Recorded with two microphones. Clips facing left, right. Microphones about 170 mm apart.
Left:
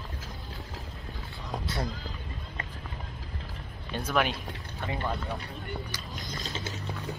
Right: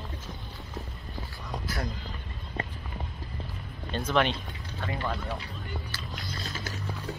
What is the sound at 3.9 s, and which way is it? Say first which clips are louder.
Speech: right 2 dB; 10° left (ahead or behind).